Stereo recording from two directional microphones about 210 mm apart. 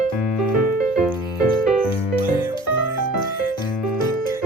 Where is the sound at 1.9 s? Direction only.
25° left (ahead or behind).